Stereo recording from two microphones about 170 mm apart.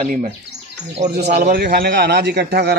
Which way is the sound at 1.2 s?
75° right (ahead or behind).